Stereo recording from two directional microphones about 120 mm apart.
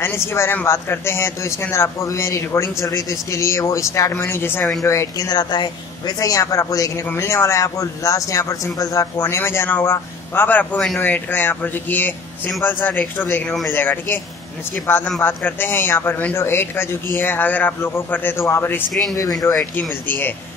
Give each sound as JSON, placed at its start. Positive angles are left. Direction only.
{"t": 0.0, "sound": "a man's voice", "side_deg": 20}
{"t": 19.6, "sound": "a man's voice", "side_deg": 15}